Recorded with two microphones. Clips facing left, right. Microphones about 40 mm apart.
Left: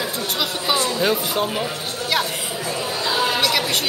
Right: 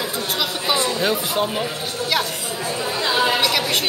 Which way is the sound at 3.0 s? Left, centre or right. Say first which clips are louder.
Right 2 dB; right.